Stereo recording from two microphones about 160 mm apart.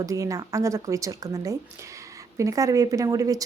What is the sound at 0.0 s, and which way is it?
Speech, 20° right (ahead or behind).